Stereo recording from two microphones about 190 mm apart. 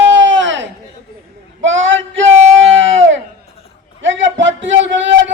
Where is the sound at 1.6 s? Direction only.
90° right.